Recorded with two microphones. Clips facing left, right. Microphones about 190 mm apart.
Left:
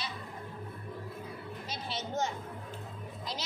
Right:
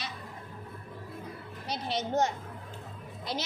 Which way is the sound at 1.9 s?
70° right (ahead or behind).